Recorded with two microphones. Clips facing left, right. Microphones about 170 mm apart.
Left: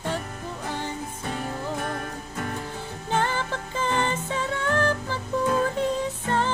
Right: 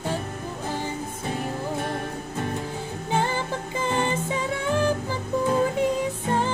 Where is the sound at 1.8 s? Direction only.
25° right (ahead or behind).